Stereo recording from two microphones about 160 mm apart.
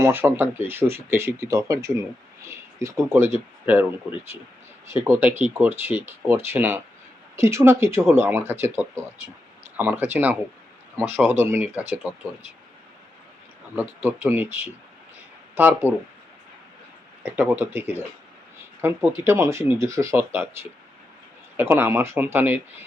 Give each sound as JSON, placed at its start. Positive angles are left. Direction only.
{"t": 0.0, "sound": "speech", "side_deg": -15}
{"t": 5.0, "sound": "speech", "side_deg": -15}
{"t": 13.7, "sound": "speech", "side_deg": -15}
{"t": 17.5, "sound": "speech", "side_deg": -15}
{"t": 21.5, "sound": "speech", "side_deg": -15}